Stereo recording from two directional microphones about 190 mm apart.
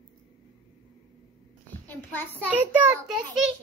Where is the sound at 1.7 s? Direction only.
10° left (ahead or behind).